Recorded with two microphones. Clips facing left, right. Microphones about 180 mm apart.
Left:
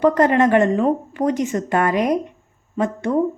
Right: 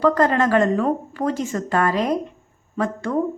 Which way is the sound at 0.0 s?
20° left (ahead or behind).